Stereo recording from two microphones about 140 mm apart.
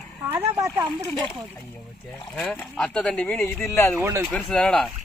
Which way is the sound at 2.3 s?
5° left (ahead or behind).